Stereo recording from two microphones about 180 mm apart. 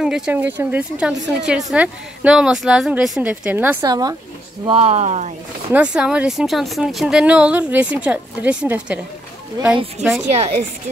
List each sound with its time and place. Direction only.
0.0 s speech: 5° right (ahead or behind); by 4.2 s 20° right (ahead or behind)
4.6 s speech: 35° right (ahead or behind)
5.7 s speech: 5° right (ahead or behind)
10.0 s speech: 40° right (ahead or behind)